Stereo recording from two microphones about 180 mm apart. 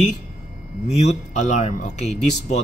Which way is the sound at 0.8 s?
35° left (ahead or behind).